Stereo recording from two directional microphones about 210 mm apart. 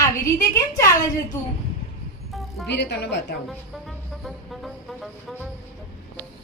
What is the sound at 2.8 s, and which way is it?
Speech, 55° left (ahead or behind).